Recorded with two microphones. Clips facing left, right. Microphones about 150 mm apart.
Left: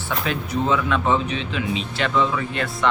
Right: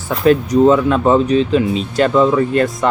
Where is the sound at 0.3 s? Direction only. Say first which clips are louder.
Right 13 dB; 40° right (ahead or behind).